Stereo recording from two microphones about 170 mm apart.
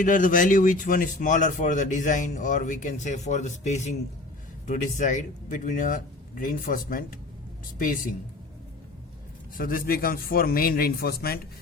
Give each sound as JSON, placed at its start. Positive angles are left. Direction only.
{"t": 0.0, "sound": "speech", "side_deg": 50}
{"t": 9.6, "sound": "a man's voice", "side_deg": 55}